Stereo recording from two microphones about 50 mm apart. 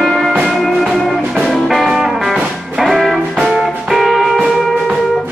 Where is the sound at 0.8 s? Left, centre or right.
Centre.